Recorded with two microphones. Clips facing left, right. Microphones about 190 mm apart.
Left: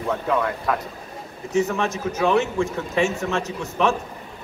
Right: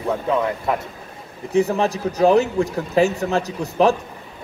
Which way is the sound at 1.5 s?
35° right (ahead or behind).